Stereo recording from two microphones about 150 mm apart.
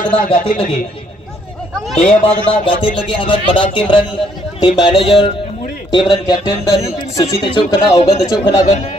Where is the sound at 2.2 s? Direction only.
35° left (ahead or behind).